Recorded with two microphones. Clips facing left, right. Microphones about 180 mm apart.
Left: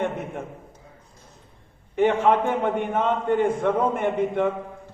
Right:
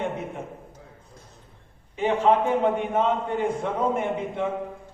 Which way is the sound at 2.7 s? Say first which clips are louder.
Even; 55° left (ahead or behind).